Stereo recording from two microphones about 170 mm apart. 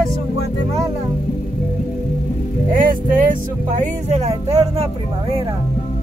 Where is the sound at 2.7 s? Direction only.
50° right (ahead or behind).